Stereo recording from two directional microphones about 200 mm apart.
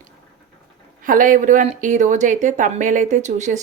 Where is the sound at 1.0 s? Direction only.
40° right (ahead or behind).